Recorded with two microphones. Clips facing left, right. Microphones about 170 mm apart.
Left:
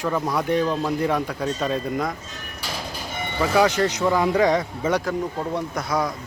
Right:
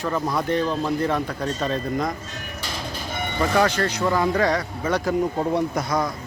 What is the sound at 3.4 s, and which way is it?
Speech, 5° left (ahead or behind).